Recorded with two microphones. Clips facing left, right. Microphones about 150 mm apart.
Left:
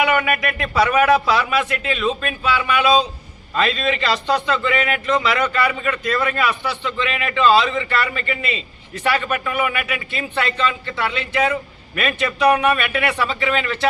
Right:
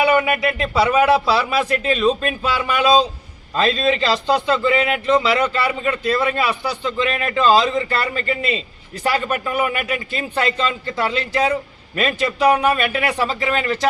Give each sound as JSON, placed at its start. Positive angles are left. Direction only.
{"t": 0.0, "sound": "a man's voice", "side_deg": -30}